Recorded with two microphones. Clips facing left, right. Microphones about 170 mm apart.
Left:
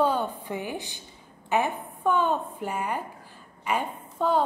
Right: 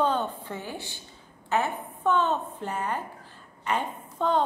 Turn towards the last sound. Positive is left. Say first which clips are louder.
# left 1 dB
turn(degrees=5)  # may be behind; listen again after turning